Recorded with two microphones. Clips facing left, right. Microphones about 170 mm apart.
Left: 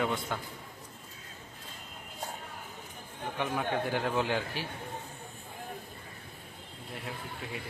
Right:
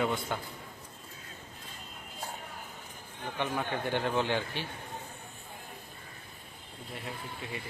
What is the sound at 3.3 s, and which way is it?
A man's voice, centre (ahead or behind).